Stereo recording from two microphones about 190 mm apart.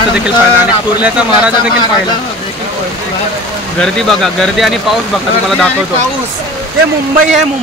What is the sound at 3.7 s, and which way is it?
Speech, centre (ahead or behind).